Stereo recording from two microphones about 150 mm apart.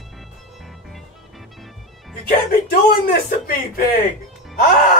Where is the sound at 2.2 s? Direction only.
80° left.